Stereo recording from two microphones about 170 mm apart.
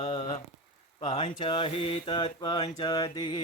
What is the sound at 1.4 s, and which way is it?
Mantra, 30° left (ahead or behind).